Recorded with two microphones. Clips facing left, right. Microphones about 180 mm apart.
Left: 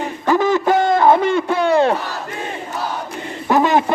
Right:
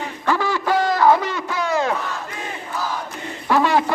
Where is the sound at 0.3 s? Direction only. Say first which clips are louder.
Left 5 dB; 20° left (ahead or behind).